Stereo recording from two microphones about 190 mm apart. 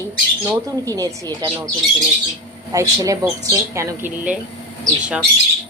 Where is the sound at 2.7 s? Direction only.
15° right (ahead or behind).